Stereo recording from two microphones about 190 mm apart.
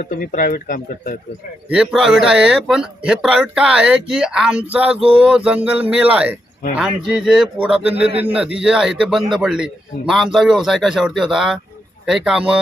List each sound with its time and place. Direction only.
0.0 s speech: 45° left (ahead or behind)
1.7 s a man's voice: 5° right (ahead or behind)